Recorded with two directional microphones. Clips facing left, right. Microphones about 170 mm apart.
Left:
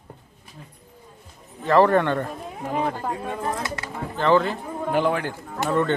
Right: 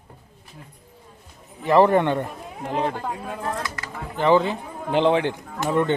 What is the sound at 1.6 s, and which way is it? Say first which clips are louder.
Speech: right 1 dB; 15° right (ahead or behind).